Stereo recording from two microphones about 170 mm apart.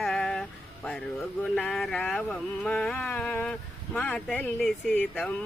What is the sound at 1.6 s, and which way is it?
Speech, 5° left (ahead or behind).